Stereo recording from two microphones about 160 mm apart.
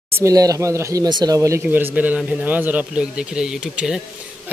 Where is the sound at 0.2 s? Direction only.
20° right (ahead or behind).